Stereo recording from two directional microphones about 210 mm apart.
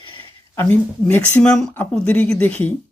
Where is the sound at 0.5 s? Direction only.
10° left (ahead or behind).